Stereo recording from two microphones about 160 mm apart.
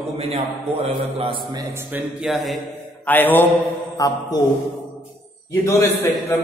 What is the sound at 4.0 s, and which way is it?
Speech, 20° left (ahead or behind).